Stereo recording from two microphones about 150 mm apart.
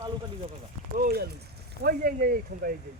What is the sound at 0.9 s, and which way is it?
Speech, 90° right.